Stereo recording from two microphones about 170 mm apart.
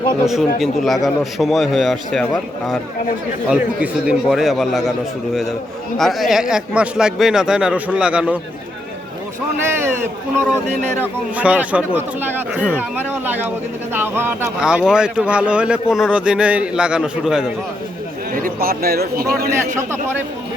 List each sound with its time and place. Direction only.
0.3 s speech: centre (ahead or behind)
9.6 s speech: 15° right (ahead or behind)
18.3 s speech: 55° right (ahead or behind)
19.7 s speech: 15° right (ahead or behind)